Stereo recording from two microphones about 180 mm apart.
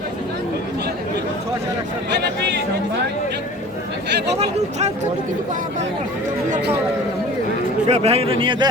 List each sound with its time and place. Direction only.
7.9 s a man's voice: 35° right (ahead or behind)